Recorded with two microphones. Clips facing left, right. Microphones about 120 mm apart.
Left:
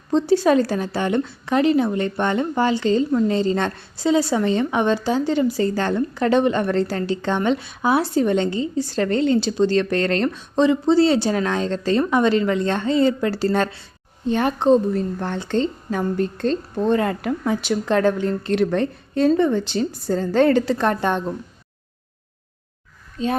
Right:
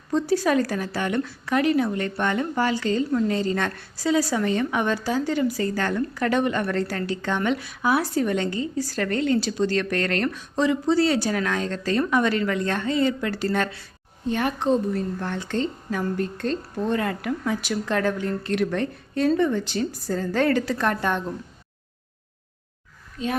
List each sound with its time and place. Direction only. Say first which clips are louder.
0.1 s a woman's voice: left 5 dB; 25° left (ahead or behind)
23.2 s a woman's voice: left 5 dB; 30° left (ahead or behind)